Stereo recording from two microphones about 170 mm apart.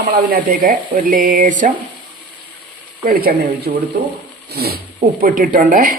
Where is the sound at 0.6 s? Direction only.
50° right (ahead or behind).